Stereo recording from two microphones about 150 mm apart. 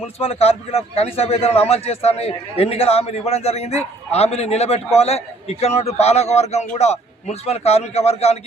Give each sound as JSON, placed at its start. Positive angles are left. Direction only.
{"t": 0.2, "sound": "a man's voice", "side_deg": 40}